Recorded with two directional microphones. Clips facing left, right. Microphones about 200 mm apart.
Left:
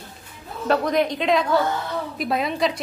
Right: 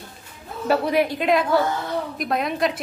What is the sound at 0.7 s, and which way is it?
A woman's voice, 5° right (ahead or behind).